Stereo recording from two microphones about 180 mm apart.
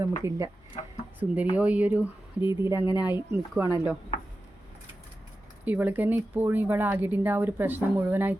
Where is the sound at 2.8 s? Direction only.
20° left (ahead or behind).